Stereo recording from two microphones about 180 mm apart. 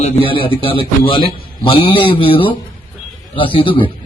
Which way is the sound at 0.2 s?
30° left (ahead or behind).